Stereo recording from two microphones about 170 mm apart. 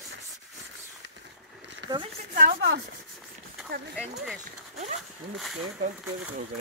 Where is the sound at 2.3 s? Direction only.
55° right (ahead or behind).